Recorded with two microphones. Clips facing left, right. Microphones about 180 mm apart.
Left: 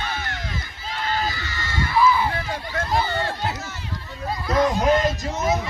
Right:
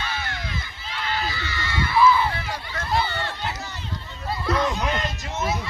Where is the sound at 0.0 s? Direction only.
50° left (ahead or behind).